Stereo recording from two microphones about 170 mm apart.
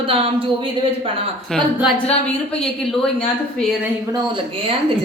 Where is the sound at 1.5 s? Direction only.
5° left (ahead or behind).